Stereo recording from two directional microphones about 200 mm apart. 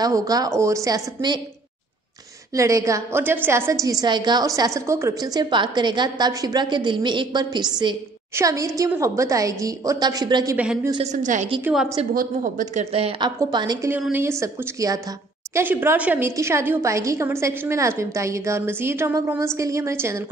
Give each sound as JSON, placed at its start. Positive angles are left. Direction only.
{"t": 0.0, "sound": "a woman's voice", "side_deg": -20}
{"t": 2.5, "sound": "a woman's voice", "side_deg": -15}
{"t": 10.6, "sound": "a woman's voice", "side_deg": -5}
{"t": 10.9, "sound": "a woman's voice", "side_deg": -30}
{"t": 11.6, "sound": "a woman's voice", "side_deg": -5}
{"t": 12.1, "sound": "a woman's voice", "side_deg": -45}
{"t": 12.9, "sound": "a woman's voice", "side_deg": -30}